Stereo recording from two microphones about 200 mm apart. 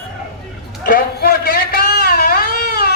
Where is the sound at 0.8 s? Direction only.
50° left (ahead or behind).